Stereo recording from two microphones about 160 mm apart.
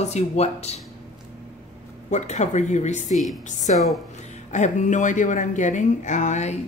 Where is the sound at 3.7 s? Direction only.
50° left (ahead or behind).